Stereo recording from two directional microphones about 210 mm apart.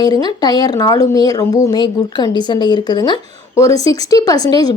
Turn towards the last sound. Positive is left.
turn(degrees=20)  # may be behind; listen again after turning